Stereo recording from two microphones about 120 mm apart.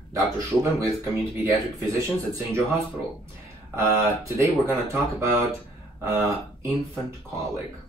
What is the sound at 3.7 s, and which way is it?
Speech, 20° right (ahead or behind).